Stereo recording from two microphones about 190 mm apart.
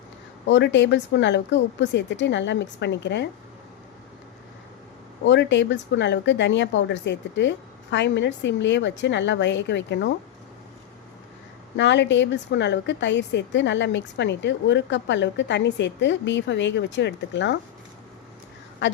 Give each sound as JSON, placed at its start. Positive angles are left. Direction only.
{"t": 0.4, "sound": "a woman's voice", "side_deg": 70}
{"t": 5.2, "sound": "a woman's voice", "side_deg": 70}
{"t": 11.8, "sound": "a woman's voice", "side_deg": 70}
{"t": 18.8, "sound": "speech", "side_deg": 75}